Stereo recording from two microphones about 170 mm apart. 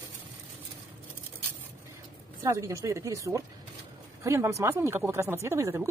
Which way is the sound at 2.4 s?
15° right (ahead or behind).